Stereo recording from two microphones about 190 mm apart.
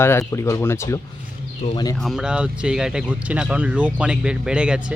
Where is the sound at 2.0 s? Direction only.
Centre (ahead or behind).